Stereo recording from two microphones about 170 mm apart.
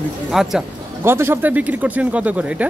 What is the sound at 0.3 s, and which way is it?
Speech, centre (ahead or behind).